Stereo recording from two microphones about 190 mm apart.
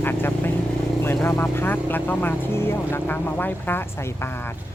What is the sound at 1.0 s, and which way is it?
Speech, 10° left (ahead or behind).